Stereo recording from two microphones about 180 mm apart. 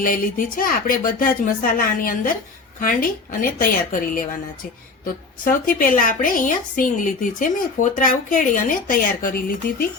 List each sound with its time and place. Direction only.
0.0 s a woman's voice: 50° left (ahead or behind)
5.5 s a woman's voice: 50° left (ahead or behind)